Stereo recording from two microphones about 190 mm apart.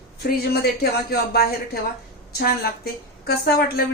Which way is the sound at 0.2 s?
55° left (ahead or behind).